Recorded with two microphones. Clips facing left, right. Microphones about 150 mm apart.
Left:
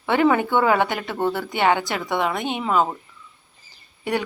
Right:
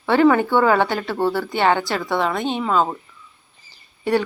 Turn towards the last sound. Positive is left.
turn(degrees=15)  # may be behind; listen again after turning